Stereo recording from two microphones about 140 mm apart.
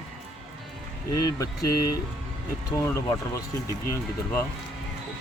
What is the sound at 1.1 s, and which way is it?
Speech, 25° left (ahead or behind).